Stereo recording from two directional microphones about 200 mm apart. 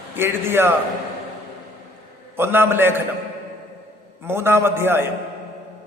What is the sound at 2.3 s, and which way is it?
Speech, 10° right (ahead or behind).